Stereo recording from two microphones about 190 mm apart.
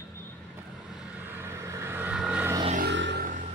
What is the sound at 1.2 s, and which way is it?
Vehicle, 10° right (ahead or behind).